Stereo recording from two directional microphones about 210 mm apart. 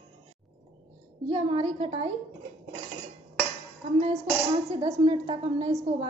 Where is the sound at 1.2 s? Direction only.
25° right (ahead or behind).